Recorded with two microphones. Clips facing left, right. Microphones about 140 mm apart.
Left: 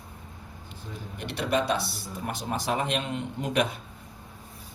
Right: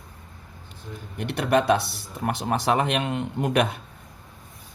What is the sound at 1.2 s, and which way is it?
Speech, 55° right (ahead or behind).